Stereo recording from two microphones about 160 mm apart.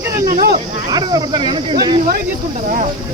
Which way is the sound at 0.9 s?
25° right (ahead or behind).